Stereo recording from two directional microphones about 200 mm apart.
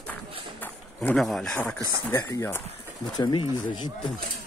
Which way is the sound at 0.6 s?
5° left (ahead or behind).